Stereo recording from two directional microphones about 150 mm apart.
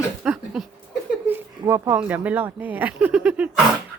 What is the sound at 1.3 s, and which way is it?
Speech, 20° right (ahead or behind).